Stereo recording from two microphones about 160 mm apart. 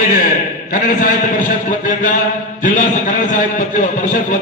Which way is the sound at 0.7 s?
55° left (ahead or behind).